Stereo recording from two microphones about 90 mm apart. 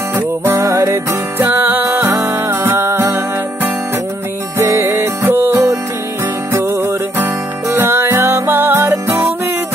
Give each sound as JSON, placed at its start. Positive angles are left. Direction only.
{"t": 0.1, "sound": "music", "side_deg": -30}
{"t": 4.6, "sound": "music", "side_deg": -30}